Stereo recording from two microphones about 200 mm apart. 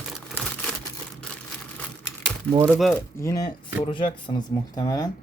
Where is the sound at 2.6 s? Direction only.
Centre (ahead or behind).